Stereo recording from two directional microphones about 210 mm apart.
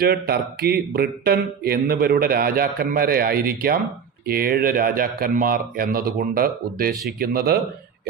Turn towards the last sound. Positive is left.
turn(degrees=-45)  # may be behind; listen again after turning